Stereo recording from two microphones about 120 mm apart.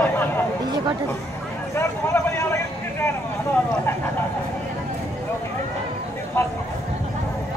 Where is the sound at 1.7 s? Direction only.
25° left (ahead or behind).